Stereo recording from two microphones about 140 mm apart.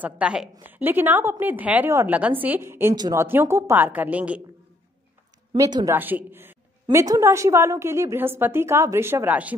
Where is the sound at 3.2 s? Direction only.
15° right (ahead or behind).